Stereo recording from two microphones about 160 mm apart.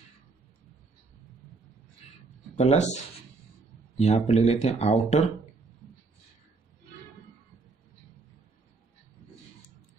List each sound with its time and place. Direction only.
2.5 s speech: 45° left (ahead or behind)
4.0 s speech: 45° left (ahead or behind)